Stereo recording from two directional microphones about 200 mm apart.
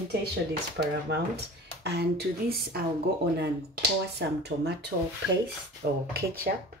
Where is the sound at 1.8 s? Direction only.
55° right (ahead or behind).